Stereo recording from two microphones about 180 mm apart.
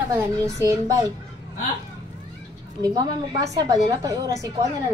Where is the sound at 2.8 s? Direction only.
20° right (ahead or behind).